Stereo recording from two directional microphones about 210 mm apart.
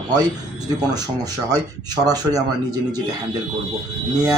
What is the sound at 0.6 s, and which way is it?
Speech, 20° right (ahead or behind).